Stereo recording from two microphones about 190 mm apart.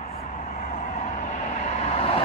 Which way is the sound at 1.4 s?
35° left (ahead or behind).